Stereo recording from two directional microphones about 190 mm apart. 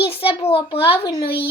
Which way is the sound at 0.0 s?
30° left (ahead or behind).